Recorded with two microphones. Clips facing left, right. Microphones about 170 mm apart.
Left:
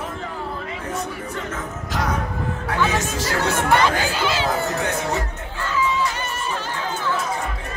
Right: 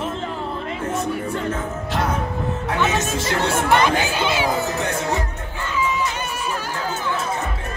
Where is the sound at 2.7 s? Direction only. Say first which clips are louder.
Even; 25° right (ahead or behind).